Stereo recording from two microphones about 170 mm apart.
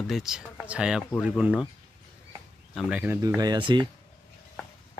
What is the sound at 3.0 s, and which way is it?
Speech, 15° right (ahead or behind).